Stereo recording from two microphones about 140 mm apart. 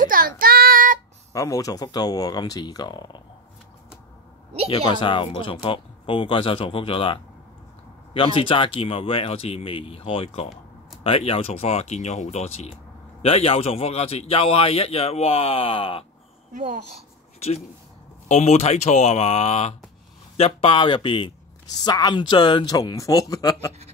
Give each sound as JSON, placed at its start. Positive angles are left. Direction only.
{"t": 0.0, "sound": "child singing", "side_deg": -90}
{"t": 1.3, "sound": "speech", "side_deg": 25}
{"t": 4.6, "sound": "a man's voice", "side_deg": 35}
{"t": 16.5, "sound": "a woman's voice", "side_deg": -60}
{"t": 18.3, "sound": "a man's voice", "side_deg": 55}